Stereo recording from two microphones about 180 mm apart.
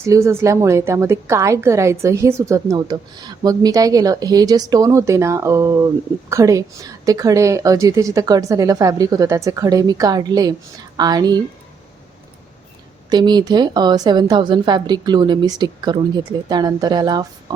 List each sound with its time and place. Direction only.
0.0 s a woman's voice: 15° right (ahead or behind)
13.1 s a woman's voice: 25° right (ahead or behind)